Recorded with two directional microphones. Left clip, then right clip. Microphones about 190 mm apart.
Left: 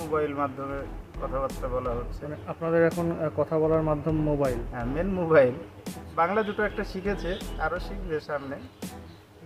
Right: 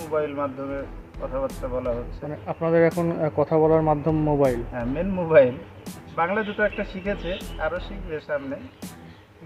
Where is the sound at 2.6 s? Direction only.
30° right (ahead or behind).